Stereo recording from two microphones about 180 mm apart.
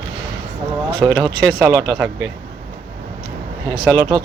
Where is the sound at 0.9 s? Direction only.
25° right (ahead or behind).